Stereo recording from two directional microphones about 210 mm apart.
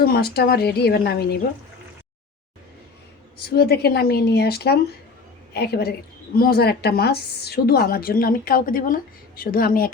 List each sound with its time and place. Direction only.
0.0 s a woman's voice: 45° left (ahead or behind)
3.5 s a woman's voice: 50° left (ahead or behind)